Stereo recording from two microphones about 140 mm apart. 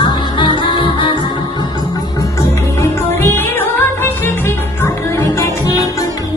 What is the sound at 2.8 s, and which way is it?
Music, 15° left (ahead or behind).